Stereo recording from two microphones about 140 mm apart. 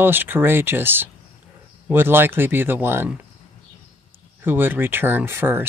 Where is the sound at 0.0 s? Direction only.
15° right (ahead or behind).